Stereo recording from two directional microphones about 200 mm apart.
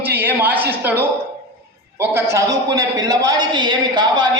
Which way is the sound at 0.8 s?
10° right (ahead or behind).